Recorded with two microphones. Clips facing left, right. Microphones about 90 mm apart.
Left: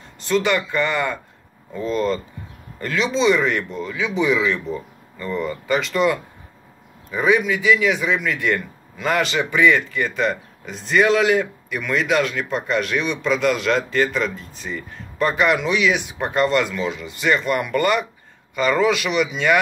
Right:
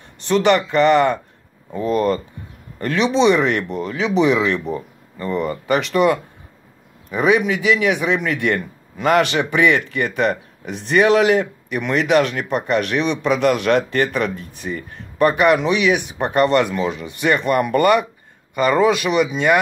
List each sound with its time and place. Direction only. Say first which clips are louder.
0.6 s a man's voice: right 7 dB; 65° right (ahead or behind)
1.8 s a man's voice: right 3 dB; 55° right (ahead or behind); by 4.2 s 70° right (ahead or behind)
4.7 s a sound: right 3 dB; 20° right (ahead or behind)
5.4 s a man's voice: right 2 dB; 60° right (ahead or behind); by 19.6 s 40° right (ahead or behind)